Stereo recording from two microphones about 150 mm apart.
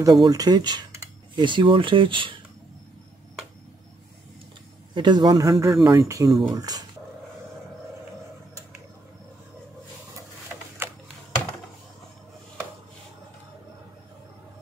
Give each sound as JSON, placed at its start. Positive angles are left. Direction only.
{"t": 0.0, "sound": "speech", "side_deg": -25}
{"t": 4.9, "sound": "a man's voice", "side_deg": -30}